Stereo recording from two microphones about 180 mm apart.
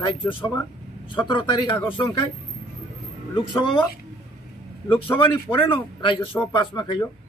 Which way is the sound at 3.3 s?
30° left (ahead or behind).